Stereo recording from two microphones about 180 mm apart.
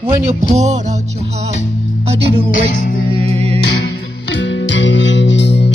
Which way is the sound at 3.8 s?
80° left.